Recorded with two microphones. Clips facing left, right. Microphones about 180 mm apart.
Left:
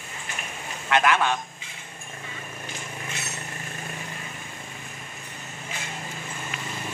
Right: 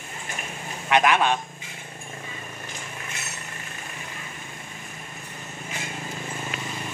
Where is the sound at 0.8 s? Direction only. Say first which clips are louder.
Right 2 dB; 15° right (ahead or behind).